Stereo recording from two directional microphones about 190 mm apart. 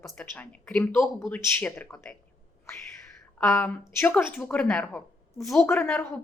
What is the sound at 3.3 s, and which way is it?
Speech, 5° left (ahead or behind).